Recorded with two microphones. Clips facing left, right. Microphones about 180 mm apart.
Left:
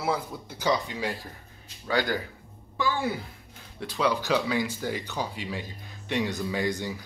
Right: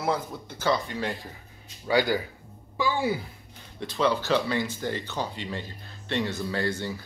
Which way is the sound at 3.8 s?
10° left (ahead or behind).